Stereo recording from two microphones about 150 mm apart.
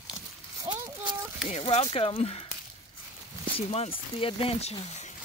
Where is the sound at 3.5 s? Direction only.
40° left (ahead or behind).